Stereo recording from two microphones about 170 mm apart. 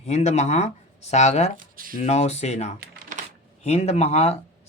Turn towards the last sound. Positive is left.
turn(degrees=40)  # may be behind; listen again after turning